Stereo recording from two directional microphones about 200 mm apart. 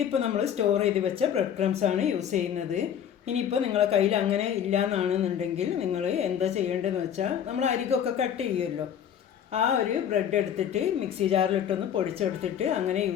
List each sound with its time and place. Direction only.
0.1 s speech: 30° right (ahead or behind)
10.1 s speech: 35° right (ahead or behind)